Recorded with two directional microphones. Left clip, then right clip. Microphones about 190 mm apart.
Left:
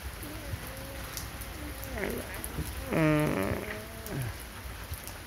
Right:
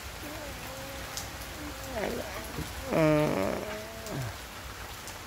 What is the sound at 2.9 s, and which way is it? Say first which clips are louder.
Fart: right 2 dB; 5° right (ahead or behind).